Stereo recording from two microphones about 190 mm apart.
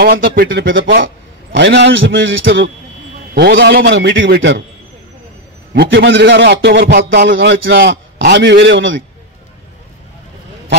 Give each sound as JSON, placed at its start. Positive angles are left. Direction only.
{"t": 0.0, "sound": "a man's voice", "side_deg": -55}
{"t": 3.3, "sound": "a man's voice", "side_deg": -60}
{"t": 5.7, "sound": "a man's voice", "side_deg": -65}